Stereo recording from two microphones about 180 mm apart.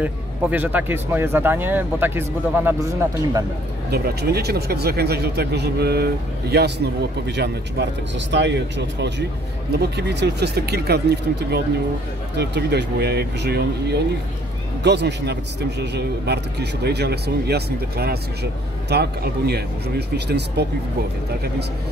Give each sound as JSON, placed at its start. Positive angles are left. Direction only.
{"t": 0.0, "sound": "speech", "side_deg": -10}
{"t": 3.9, "sound": "speech", "side_deg": -65}